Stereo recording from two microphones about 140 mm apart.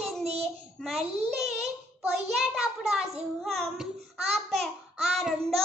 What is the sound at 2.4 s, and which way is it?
A child's voice, centre (ahead or behind).